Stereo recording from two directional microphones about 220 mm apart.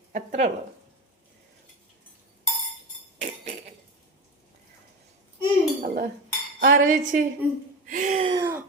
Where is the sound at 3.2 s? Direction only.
30° right (ahead or behind).